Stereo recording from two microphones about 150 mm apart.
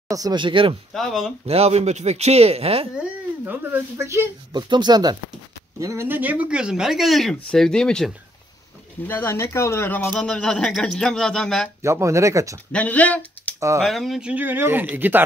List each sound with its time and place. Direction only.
0.1 s speech: 25° right (ahead or behind)
0.9 s speech: centre (ahead or behind)
1.5 s speech: 45° right (ahead or behind)
3.0 s speech: 15° right (ahead or behind)
4.6 s speech: 30° right (ahead or behind); by 8.1 s 5° left (ahead or behind)
9.0 s speech: 15° left (ahead or behind)
11.8 s speech: 20° right (ahead or behind)
12.7 s speech: 10° left (ahead or behind); by 15.2 s 10° right (ahead or behind)